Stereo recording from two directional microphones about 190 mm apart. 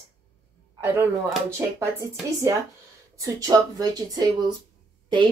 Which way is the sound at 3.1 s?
15° right (ahead or behind).